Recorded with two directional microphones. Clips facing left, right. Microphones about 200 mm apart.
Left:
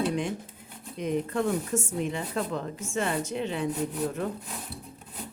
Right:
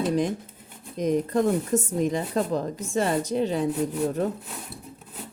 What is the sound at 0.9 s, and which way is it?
Speech, 40° right (ahead or behind).